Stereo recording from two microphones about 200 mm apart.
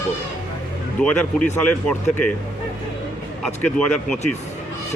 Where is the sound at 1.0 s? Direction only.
5° left (ahead or behind).